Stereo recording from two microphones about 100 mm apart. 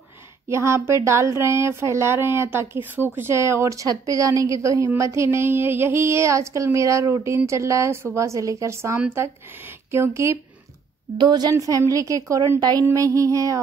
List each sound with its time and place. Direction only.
0.5 s speech: 30° right (ahead or behind)
11.1 s a woman's voice: 45° right (ahead or behind)
11.5 s a woman's voice: 35° right (ahead or behind)